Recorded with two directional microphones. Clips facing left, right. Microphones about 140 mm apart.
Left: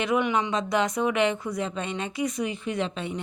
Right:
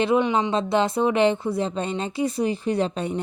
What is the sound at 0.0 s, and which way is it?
A woman's voice, 25° right (ahead or behind).